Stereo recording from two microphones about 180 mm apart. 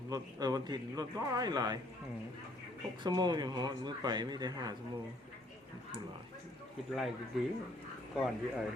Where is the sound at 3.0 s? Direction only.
25° right (ahead or behind).